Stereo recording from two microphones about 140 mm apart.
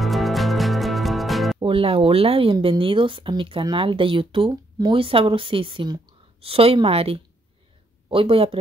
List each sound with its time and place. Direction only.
0.0 s music: centre (ahead or behind)
1.6 s speech: 40° right (ahead or behind)
4.5 s speech: 25° right (ahead or behind)
4.9 s a woman's voice: 40° right (ahead or behind)